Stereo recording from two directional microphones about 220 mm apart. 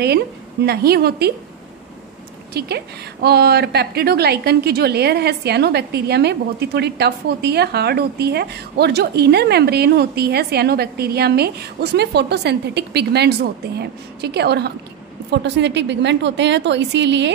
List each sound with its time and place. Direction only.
0.7 s a woman's voice: 45° right (ahead or behind)
2.5 s a woman's voice: 45° right (ahead or behind)